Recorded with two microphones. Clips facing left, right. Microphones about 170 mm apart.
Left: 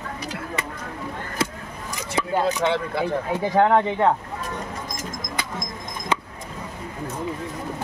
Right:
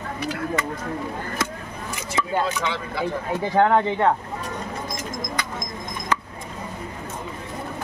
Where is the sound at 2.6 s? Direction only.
55° left (ahead or behind).